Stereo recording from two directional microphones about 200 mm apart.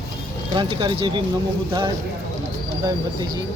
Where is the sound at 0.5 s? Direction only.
25° right (ahead or behind).